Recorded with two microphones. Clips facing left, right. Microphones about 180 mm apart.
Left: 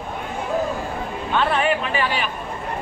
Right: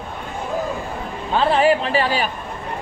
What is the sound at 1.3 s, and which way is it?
Speech, 30° right (ahead or behind).